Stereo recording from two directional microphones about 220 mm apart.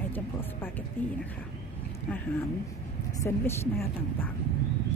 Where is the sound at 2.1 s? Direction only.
10° left (ahead or behind).